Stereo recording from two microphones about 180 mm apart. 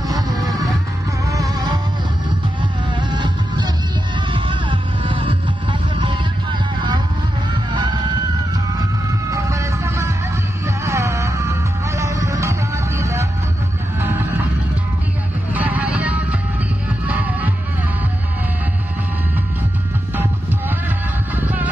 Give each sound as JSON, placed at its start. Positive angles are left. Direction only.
{"t": 0.1, "sound": "music", "side_deg": -20}
{"t": 2.9, "sound": "music", "side_deg": -25}
{"t": 7.7, "sound": "music", "side_deg": -25}
{"t": 9.3, "sound": "music", "side_deg": -15}
{"t": 13.9, "sound": "vehicle", "side_deg": -10}
{"t": 15.5, "sound": "music", "side_deg": -10}
{"t": 21.4, "sound": "music", "side_deg": -10}